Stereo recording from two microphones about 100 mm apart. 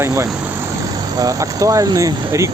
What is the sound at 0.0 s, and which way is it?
Speech, 30° right (ahead or behind).